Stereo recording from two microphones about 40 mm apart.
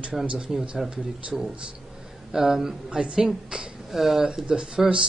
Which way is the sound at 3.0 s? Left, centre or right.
Right.